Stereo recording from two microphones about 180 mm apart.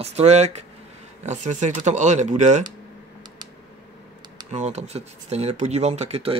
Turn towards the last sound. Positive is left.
turn(degrees=-35)  # may be behind; listen again after turning